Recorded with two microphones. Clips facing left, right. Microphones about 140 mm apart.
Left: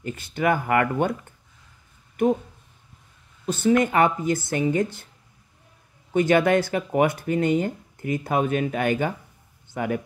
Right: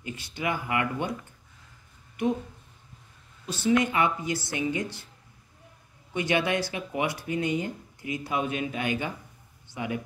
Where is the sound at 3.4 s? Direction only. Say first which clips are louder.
Left 4 dB; 50° left (ahead or behind).